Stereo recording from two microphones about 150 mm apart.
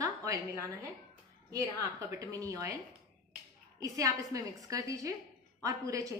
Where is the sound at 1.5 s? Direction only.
20° right (ahead or behind).